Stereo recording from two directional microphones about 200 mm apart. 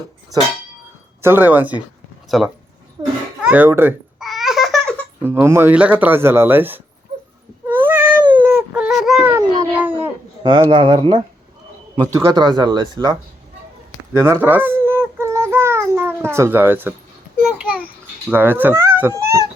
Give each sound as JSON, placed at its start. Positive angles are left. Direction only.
{"t": 1.2, "sound": "speech", "side_deg": -10}
{"t": 3.0, "sound": "a sound", "side_deg": -15}
{"t": 3.4, "sound": "a child's voice", "side_deg": -10}
{"t": 4.2, "sound": "babbling", "side_deg": 0}
{"t": 5.2, "sound": "speech", "side_deg": -10}
{"t": 7.7, "sound": "cat", "side_deg": -10}
{"t": 8.3, "sound": "a sound", "side_deg": -10}
{"t": 10.4, "sound": "a man's voice", "side_deg": -25}
{"t": 14.1, "sound": "babbling", "side_deg": -10}
{"t": 17.4, "sound": "a sound", "side_deg": -5}
{"t": 18.3, "sound": "speech", "side_deg": -10}